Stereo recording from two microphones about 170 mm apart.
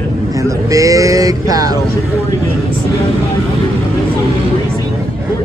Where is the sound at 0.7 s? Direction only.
20° right (ahead or behind).